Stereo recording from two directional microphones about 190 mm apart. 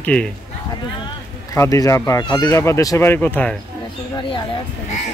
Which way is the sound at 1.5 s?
15° left (ahead or behind).